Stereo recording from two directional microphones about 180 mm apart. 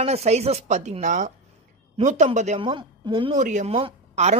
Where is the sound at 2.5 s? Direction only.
25° right (ahead or behind).